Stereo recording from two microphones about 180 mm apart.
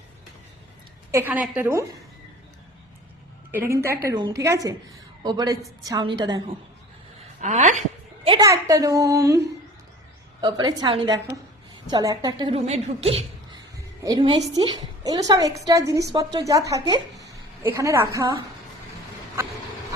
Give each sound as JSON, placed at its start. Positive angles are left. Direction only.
{"t": 1.1, "sound": "a woman's voice", "side_deg": -10}
{"t": 3.5, "sound": "a woman's voice", "side_deg": -15}
{"t": 7.4, "sound": "a sound", "side_deg": -40}
{"t": 8.3, "sound": "a woman's voice", "side_deg": -20}